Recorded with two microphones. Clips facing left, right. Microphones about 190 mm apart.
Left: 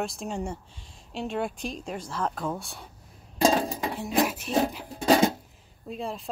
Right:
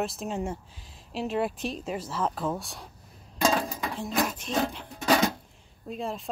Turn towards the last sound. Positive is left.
turn(degrees=0)  # may be behind; listen again after turning